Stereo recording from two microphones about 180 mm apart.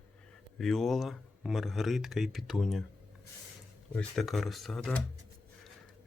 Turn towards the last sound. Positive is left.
turn(degrees=5)  # may be behind; listen again after turning